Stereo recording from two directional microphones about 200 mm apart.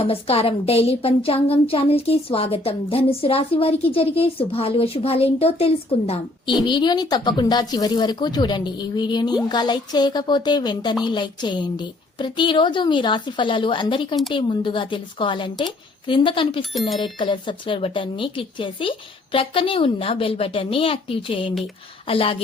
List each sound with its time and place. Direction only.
0.0 s speech: 30° left (ahead or behind)